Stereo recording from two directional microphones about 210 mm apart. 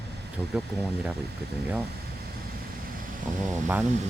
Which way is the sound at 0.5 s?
5° right (ahead or behind).